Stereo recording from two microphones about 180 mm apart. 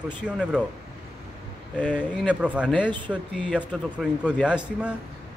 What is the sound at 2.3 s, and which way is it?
Speech, 5° right (ahead or behind).